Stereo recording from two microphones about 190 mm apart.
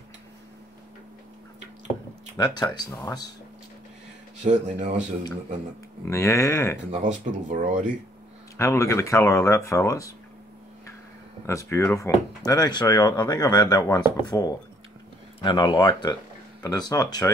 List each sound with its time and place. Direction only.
2.3 s speech: 20° left (ahead or behind)
4.4 s speech: 40° right (ahead or behind)
6.0 s speech: 15° left (ahead or behind)
6.9 s speech: 40° right (ahead or behind)
8.5 s speech: 15° left (ahead or behind)
11.4 s speech: 15° left (ahead or behind)